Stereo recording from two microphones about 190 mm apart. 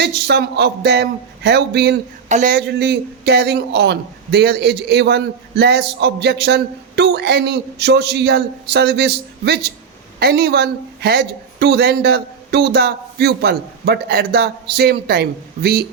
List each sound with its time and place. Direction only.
0.0 s a man's voice: 60° right (ahead or behind)
2.3 s a man's voice: 50° right (ahead or behind)